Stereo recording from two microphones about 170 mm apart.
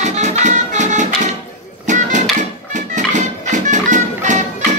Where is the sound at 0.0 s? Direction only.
40° right (ahead or behind).